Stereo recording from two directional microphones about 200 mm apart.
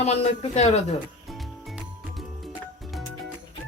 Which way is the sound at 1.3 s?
Centre (ahead or behind).